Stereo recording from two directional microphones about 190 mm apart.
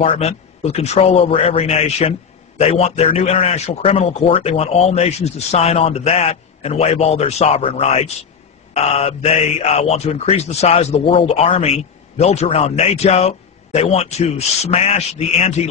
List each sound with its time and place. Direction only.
0.0 s speech: 35° left (ahead or behind)